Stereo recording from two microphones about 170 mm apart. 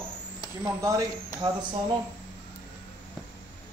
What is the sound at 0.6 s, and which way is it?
Speech, 15° right (ahead or behind).